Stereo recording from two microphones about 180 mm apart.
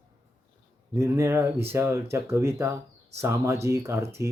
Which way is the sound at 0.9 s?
15° right (ahead or behind).